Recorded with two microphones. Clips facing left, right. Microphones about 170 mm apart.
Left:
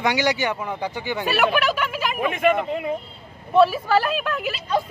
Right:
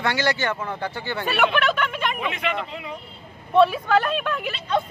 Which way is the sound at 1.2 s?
5° left (ahead or behind).